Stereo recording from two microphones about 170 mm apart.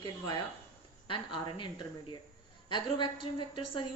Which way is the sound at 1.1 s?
30° left (ahead or behind).